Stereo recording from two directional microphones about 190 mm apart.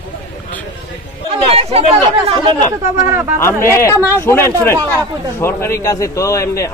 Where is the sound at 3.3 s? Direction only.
15° left (ahead or behind).